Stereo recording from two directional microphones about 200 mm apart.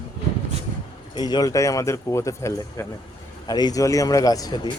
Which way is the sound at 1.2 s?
20° left (ahead or behind).